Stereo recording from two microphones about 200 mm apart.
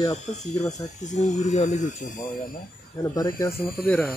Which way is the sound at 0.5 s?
35° left (ahead or behind).